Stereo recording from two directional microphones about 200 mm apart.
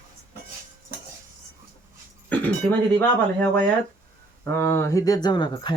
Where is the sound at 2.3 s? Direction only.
10° left (ahead or behind).